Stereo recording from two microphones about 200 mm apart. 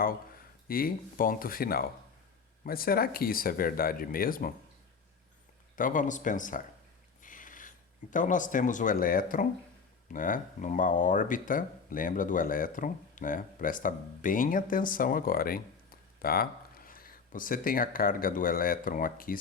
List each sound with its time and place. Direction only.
0.7 s speech: 45° left (ahead or behind)
5.7 s speech: 40° left (ahead or behind)
7.2 s a sound: 40° left (ahead or behind)
8.1 s speech: 40° left (ahead or behind)